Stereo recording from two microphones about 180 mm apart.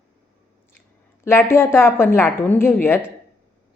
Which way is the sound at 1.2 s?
15° left (ahead or behind).